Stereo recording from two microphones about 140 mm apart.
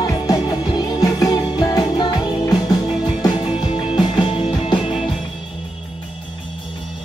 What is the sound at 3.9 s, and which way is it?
Music, 35° left (ahead or behind).